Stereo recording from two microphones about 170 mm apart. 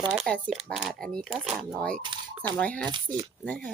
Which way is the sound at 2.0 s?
25° right (ahead or behind).